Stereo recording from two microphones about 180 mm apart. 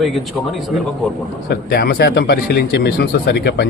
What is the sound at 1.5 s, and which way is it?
Speech, 60° left (ahead or behind).